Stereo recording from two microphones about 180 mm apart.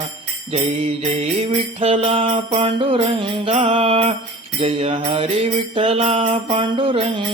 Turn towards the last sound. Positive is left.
turn(degrees=-30)  # may be behind; listen again after turning